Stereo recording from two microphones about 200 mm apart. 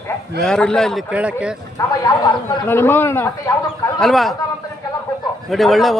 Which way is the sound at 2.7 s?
10° left (ahead or behind).